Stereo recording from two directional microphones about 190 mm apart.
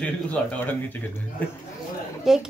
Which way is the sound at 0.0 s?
5° left (ahead or behind).